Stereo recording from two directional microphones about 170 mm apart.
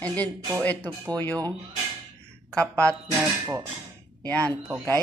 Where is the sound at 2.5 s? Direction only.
5° left (ahead or behind).